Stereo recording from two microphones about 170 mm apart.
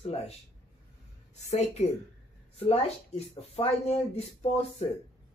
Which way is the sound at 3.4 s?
35° left (ahead or behind).